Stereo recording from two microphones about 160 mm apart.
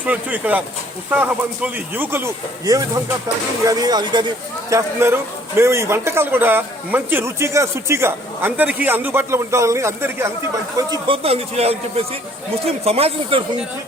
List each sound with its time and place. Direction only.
0.0 s a man's voice: 10° right (ahead or behind); by 4.3 s 30° right (ahead or behind)
4.7 s a man's voice: 15° right (ahead or behind)
11.2 s speech: 40° right (ahead or behind)